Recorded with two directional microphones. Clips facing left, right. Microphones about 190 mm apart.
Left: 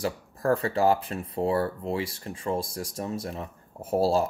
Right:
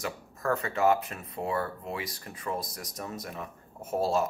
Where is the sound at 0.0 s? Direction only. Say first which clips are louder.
Left 5 dB; 30° left (ahead or behind).